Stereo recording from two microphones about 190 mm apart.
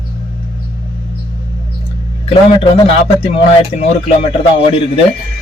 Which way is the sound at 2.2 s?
30° left (ahead or behind).